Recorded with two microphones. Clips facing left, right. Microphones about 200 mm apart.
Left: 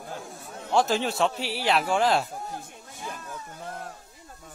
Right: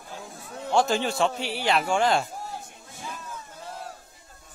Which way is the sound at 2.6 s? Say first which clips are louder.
Left 1 dB; 55° left (ahead or behind).